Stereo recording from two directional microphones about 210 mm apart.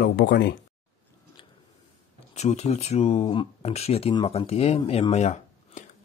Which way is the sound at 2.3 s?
30° left (ahead or behind).